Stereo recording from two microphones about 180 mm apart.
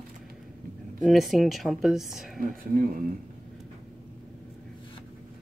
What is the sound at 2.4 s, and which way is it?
Speech, 50° right (ahead or behind).